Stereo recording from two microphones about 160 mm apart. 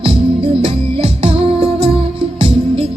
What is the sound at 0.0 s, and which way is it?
Music, 35° right (ahead or behind).